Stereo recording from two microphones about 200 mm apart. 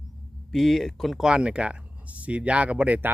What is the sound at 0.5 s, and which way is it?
Speech, centre (ahead or behind).